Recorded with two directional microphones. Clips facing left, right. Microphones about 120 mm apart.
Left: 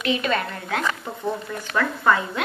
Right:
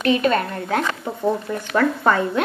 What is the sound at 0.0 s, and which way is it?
A woman's voice, 45° right (ahead or behind).